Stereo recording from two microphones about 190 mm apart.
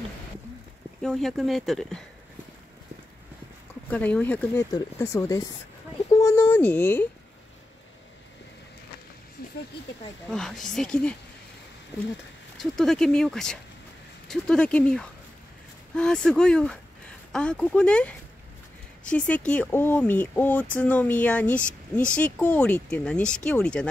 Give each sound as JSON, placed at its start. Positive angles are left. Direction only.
{"t": 1.0, "sound": "speech", "side_deg": 0}
{"t": 3.9, "sound": "speech", "side_deg": 10}
{"t": 6.1, "sound": "a sound", "side_deg": 15}
{"t": 10.3, "sound": "speech", "side_deg": 5}
{"t": 12.5, "sound": "speech", "side_deg": 0}